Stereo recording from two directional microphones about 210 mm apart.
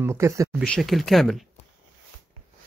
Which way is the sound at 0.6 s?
Centre (ahead or behind).